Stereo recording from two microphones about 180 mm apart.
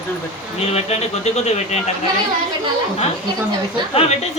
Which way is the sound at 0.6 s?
35° left (ahead or behind).